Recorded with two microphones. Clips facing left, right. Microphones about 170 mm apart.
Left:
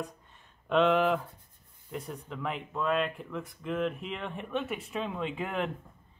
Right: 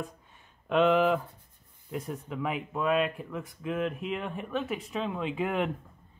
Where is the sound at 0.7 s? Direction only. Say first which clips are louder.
Right 1 dB; 5° right (ahead or behind).